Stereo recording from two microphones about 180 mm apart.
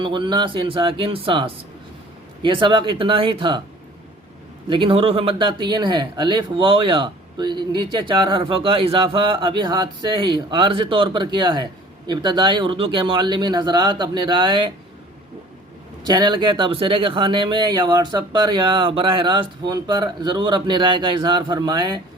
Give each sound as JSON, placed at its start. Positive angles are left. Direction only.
{"t": 0.0, "sound": "speech", "side_deg": -25}
{"t": 4.7, "sound": "speech", "side_deg": -30}
{"t": 16.0, "sound": "speech", "side_deg": -25}